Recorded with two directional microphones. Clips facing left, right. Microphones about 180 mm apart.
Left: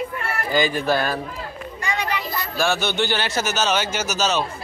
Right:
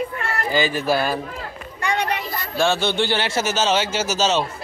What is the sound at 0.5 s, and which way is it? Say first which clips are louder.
Speech: even; 5° right (ahead or behind).